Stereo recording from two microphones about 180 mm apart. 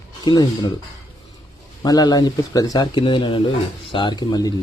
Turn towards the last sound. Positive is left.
turn(degrees=20)  # may be behind; listen again after turning